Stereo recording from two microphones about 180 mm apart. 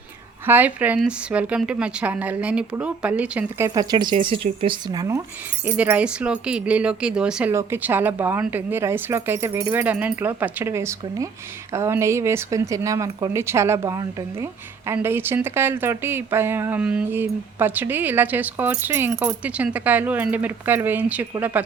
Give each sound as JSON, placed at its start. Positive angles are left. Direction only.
{"t": 0.4, "sound": "speech", "side_deg": -10}
{"t": 3.8, "sound": "speech", "side_deg": -25}
{"t": 5.6, "sound": "speech", "side_deg": -10}